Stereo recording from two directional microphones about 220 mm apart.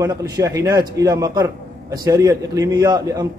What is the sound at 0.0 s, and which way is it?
A man's voice, 15° right (ahead or behind).